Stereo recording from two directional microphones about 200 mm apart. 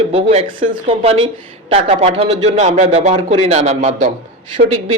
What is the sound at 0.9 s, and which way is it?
A man's voice, 30° right (ahead or behind).